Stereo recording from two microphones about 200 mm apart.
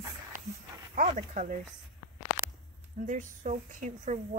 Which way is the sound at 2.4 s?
45° right (ahead or behind).